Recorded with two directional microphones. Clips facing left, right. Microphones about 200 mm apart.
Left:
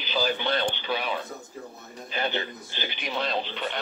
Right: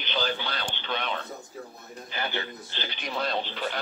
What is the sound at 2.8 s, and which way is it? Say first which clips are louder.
Speech: left 1 dB; centre (ahead or behind).